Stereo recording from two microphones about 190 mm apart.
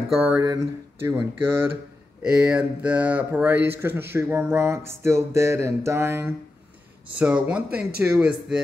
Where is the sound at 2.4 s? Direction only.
5° right (ahead or behind).